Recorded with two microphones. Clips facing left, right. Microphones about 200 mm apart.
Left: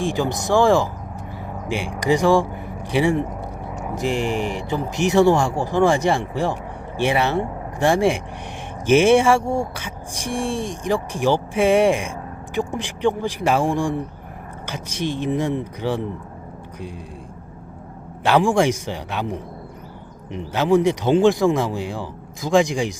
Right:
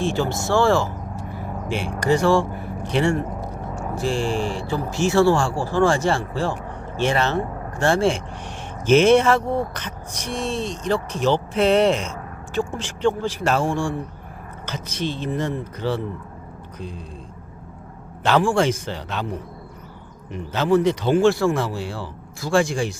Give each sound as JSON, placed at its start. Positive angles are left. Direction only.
{"t": 0.0, "sound": "speech", "side_deg": 15}
{"t": 18.2, "sound": "speech", "side_deg": 10}
{"t": 20.5, "sound": "speech", "side_deg": 15}